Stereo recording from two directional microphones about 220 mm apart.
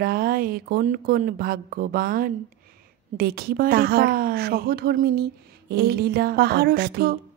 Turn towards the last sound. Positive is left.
turn(degrees=-45)  # may be behind; listen again after turning